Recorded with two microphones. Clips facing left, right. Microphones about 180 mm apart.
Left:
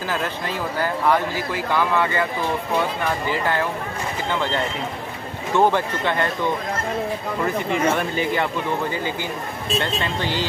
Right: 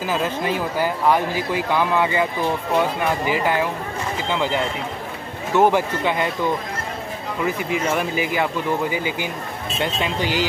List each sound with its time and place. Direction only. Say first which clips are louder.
0.1 s speech: right 5 dB; 15° right (ahead or behind)
3.3 s speech: right 2 dB; 15° right (ahead or behind)
5.6 s speech: right 2 dB; 10° right (ahead or behind)
7.4 s speech: left 1 dB; 5° right (ahead or behind)